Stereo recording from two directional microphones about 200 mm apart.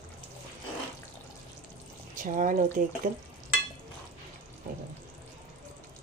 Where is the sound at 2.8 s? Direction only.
40° right (ahead or behind).